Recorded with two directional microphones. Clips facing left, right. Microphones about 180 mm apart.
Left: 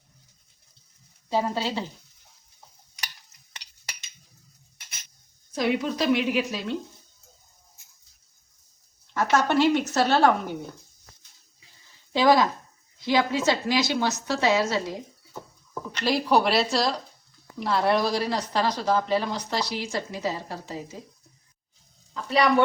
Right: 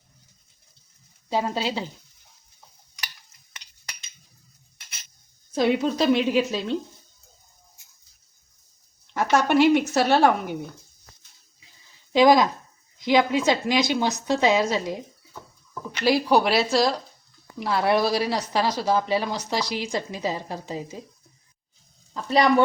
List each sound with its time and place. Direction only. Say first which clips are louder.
1.3 s speech: right 1 dB; 15° right (ahead or behind)
5.5 s a woman's voice: right 4 dB; 30° right (ahead or behind)
9.1 s speech: right 2 dB; 15° right (ahead or behind)
12.1 s speech: right 3 dB; 15° right (ahead or behind)
15.9 s speech: right 3 dB; 5° right (ahead or behind)